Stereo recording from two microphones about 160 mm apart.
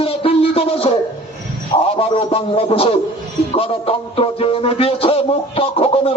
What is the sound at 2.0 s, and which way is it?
A man's voice, 35° left (ahead or behind).